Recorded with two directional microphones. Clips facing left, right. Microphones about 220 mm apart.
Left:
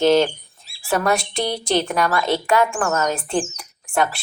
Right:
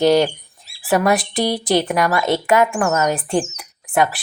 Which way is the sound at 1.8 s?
20° right (ahead or behind).